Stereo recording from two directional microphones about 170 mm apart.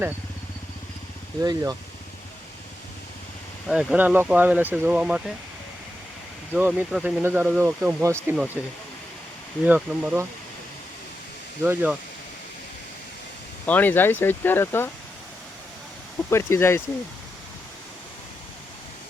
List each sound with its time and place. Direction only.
1.4 s speech: 20° right (ahead or behind)
3.7 s speech: 5° right (ahead or behind)
6.5 s speech: 10° right (ahead or behind)
11.6 s speech: 10° right (ahead or behind)
13.7 s speech: 10° left (ahead or behind)
16.3 s speech: 15° left (ahead or behind)